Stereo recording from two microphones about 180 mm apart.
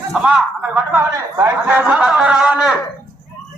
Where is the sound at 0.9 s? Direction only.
15° right (ahead or behind).